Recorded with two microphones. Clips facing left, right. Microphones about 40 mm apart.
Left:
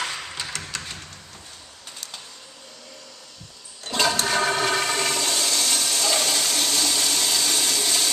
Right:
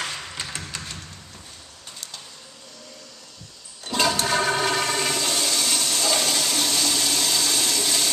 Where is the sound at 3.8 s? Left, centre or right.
Centre.